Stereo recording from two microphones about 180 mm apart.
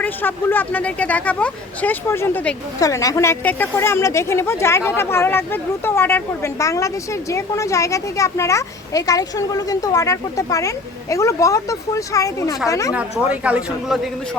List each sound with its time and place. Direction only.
0.0 s a woman's voice: 10° left (ahead or behind)
2.8 s a woman's voice: 20° left (ahead or behind)
12.9 s speech: 5° right (ahead or behind)